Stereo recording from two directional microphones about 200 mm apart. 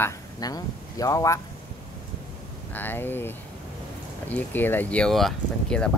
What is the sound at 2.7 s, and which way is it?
Speech, 10° left (ahead or behind).